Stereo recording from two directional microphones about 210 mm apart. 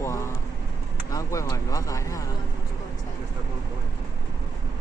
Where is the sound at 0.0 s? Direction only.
15° left (ahead or behind).